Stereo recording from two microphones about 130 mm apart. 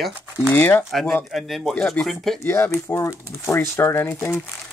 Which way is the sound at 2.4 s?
20° left (ahead or behind).